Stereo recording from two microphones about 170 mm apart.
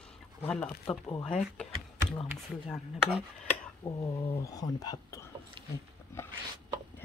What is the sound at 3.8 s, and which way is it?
Speech, 30° left (ahead or behind).